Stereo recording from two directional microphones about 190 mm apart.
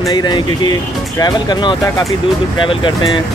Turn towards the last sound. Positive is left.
turn(degrees=25)  # may be behind; listen again after turning